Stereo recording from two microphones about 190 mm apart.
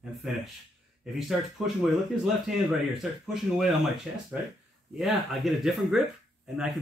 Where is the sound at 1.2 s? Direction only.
Centre (ahead or behind).